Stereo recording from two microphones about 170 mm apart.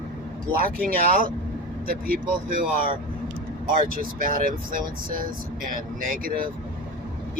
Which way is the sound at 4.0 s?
55° right (ahead or behind).